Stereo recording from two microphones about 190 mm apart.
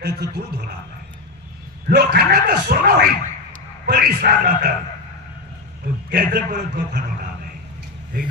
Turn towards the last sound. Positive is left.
turn(degrees=-50)  # may be behind; listen again after turning